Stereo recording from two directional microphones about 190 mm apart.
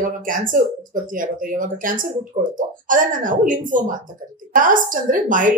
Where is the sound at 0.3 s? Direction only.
45° right (ahead or behind).